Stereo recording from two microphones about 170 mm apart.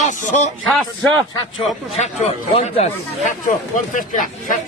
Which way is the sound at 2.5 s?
40° left (ahead or behind).